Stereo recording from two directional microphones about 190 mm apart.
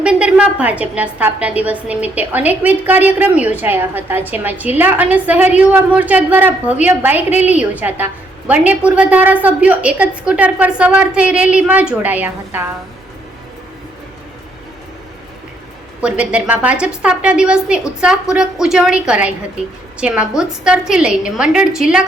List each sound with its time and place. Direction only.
0.0 s a woman's voice: 5° right (ahead or behind)
16.0 s a woman's voice: 5° right (ahead or behind)